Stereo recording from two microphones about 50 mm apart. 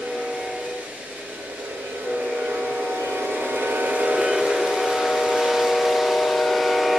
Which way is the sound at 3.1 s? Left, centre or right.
Centre.